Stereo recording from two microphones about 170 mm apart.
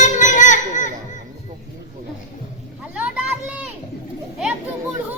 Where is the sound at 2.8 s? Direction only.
10° right (ahead or behind).